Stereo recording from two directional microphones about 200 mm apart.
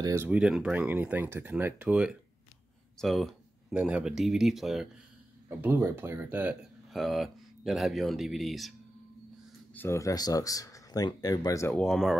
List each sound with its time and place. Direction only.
0.0 s speech: 10° right (ahead or behind)
9.8 s speech: 15° left (ahead or behind)
11.7 s speech: 5° left (ahead or behind)